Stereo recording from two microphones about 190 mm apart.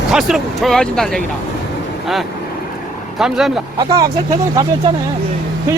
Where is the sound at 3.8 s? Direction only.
20° right (ahead or behind).